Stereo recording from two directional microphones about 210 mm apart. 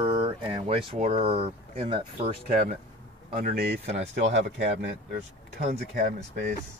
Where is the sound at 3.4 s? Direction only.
45° right (ahead or behind).